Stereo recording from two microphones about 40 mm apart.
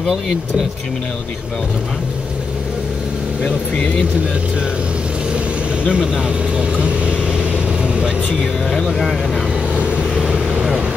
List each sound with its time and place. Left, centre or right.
5.9 s speech: right
7.3 s vehicle: right
8.8 s speech: centre
10.2 s vehicle: centre